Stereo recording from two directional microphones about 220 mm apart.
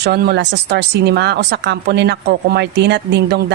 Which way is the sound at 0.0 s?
50° right (ahead or behind).